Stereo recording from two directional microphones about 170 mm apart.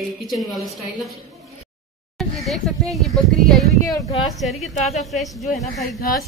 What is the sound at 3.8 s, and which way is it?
Speech, 20° left (ahead or behind).